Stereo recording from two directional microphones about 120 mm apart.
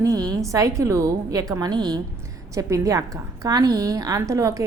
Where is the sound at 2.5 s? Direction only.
25° right (ahead or behind).